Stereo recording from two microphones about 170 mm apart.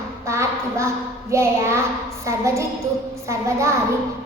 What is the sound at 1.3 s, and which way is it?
A woman's voice, 15° right (ahead or behind).